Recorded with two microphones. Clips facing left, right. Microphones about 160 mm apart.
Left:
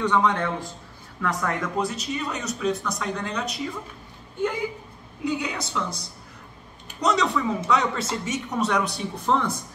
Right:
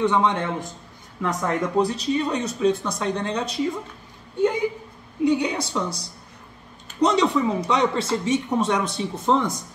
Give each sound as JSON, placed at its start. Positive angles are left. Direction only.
{"t": 0.0, "sound": "a woman's voice", "side_deg": -20}
{"t": 5.2, "sound": "a sound", "side_deg": -30}
{"t": 7.0, "sound": "a woman's voice", "side_deg": -30}